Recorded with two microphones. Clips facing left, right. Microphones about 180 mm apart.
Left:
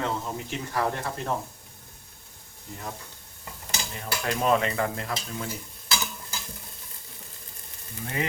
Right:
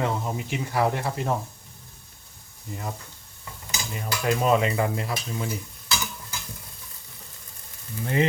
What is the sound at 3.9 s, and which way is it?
Speech, 5° right (ahead or behind).